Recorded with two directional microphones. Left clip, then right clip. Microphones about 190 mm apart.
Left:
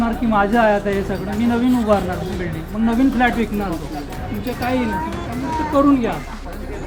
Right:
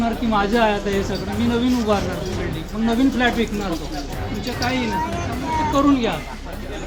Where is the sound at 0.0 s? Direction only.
50° left (ahead or behind).